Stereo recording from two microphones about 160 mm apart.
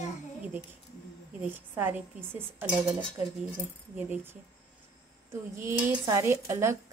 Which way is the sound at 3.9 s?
10° right (ahead or behind).